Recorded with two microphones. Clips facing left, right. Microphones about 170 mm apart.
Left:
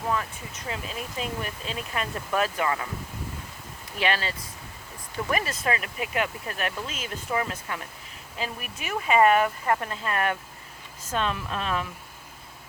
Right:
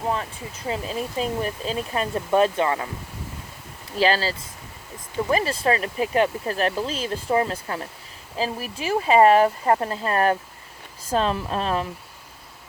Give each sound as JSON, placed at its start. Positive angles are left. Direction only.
{"t": 0.1, "sound": "speech", "side_deg": -30}
{"t": 3.9, "sound": "speech", "side_deg": -30}